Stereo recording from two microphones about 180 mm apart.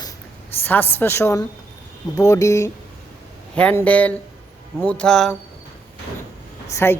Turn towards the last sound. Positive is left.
turn(degrees=15)  # may be behind; listen again after turning